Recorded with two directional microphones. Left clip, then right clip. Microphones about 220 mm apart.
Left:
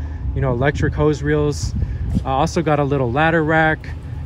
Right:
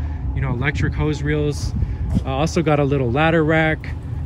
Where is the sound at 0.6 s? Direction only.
10° left (ahead or behind).